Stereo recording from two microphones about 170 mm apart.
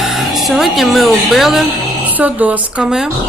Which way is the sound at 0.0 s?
Centre (ahead or behind).